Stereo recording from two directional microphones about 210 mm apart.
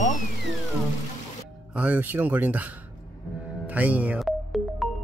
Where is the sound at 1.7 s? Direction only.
5° right (ahead or behind).